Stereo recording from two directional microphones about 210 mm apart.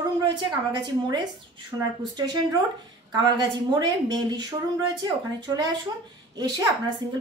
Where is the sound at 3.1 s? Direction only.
20° right (ahead or behind).